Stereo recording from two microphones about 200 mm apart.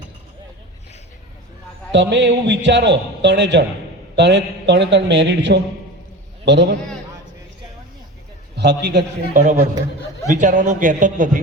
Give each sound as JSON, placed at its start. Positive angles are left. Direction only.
{"t": 1.9, "sound": "a man's voice", "side_deg": -65}
{"t": 8.5, "sound": "a man's voice", "side_deg": -55}
{"t": 10.2, "sound": "a man's voice", "side_deg": -40}